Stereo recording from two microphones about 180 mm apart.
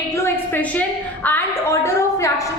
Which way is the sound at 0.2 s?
10° left (ahead or behind).